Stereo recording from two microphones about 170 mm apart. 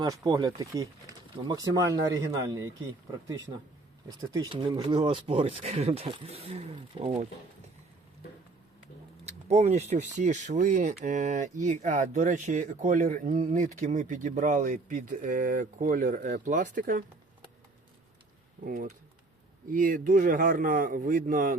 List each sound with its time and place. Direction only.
0.0 s speech: 20° right (ahead or behind)
4.2 s speech: 20° right (ahead or behind)
9.2 s speech: 40° right (ahead or behind)
18.6 s a man's voice: 50° right (ahead or behind)